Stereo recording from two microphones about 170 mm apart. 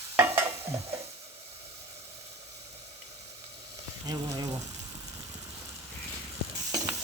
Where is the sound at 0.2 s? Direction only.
15° right (ahead or behind).